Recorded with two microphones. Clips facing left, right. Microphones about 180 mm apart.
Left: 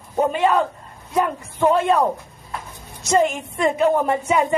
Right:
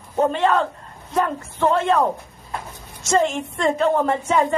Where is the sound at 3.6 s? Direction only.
15° left (ahead or behind).